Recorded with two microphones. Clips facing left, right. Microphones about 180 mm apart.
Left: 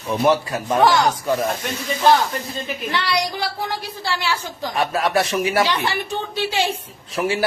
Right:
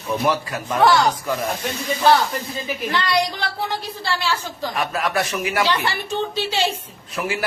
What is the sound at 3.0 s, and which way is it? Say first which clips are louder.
A woman's voice: right 1 dB; 10° left (ahead or behind).